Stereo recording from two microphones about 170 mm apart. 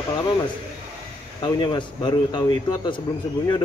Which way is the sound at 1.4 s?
25° left (ahead or behind).